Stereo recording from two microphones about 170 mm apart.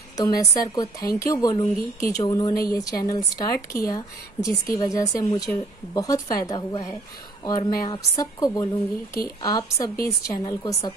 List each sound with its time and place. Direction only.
0.2 s speech: 20° left (ahead or behind)